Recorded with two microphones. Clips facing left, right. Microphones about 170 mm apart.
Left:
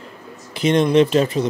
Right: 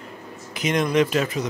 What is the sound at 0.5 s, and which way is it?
Speech, 30° left (ahead or behind).